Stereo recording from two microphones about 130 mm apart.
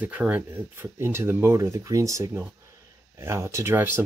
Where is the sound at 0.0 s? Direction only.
10° right (ahead or behind).